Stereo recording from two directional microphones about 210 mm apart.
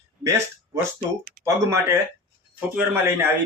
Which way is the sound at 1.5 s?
15° right (ahead or behind).